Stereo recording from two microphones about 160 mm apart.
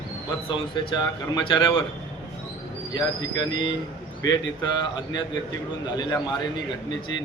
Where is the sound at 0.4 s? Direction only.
30° left (ahead or behind).